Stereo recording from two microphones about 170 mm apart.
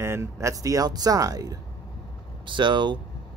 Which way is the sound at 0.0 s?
15° right (ahead or behind).